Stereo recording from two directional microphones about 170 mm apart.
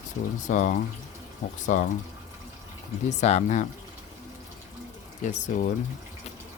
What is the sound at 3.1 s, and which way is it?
Speech, 40° left (ahead or behind).